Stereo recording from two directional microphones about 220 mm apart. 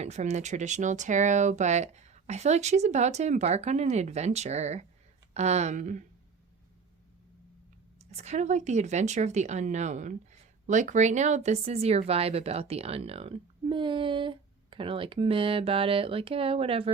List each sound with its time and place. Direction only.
0.0 s speech: 30° right (ahead or behind)
7.9 s speech: 30° right (ahead or behind)